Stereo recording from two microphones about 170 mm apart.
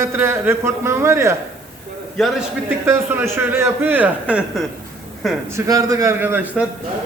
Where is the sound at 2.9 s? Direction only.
15° right (ahead or behind).